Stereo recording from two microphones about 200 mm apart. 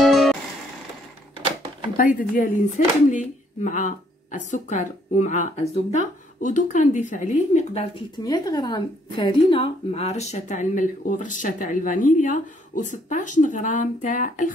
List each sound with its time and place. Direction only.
0.0 s music: centre (ahead or behind)
2.0 s a woman's voice: 45° left (ahead or behind)
8.2 s a woman's voice: 20° left (ahead or behind); by 14.5 s 40° left (ahead or behind)